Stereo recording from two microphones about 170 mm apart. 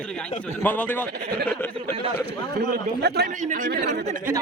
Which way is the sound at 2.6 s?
70° right (ahead or behind).